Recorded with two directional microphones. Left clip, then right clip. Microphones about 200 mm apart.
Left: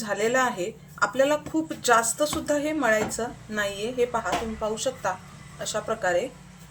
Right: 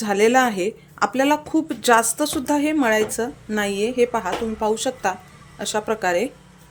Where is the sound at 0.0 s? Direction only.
50° right (ahead or behind).